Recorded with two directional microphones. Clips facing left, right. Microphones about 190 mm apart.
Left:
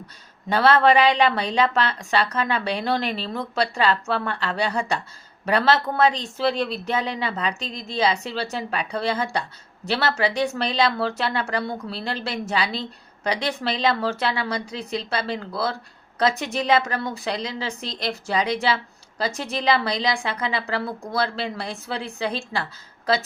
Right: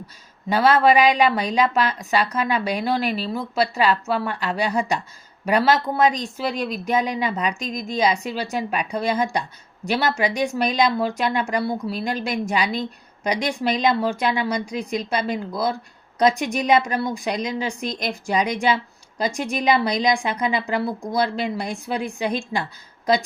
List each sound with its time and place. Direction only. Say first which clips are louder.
0.5 s speech: right 1 dB; 10° right (ahead or behind)